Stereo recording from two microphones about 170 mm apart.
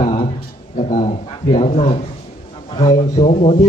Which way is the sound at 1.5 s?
35° left (ahead or behind).